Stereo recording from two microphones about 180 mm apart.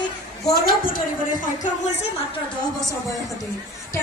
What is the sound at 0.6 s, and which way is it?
A woman's voice, 50° left (ahead or behind).